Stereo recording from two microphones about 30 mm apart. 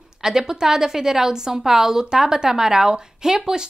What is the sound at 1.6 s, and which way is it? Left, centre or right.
A woman's voice, centre.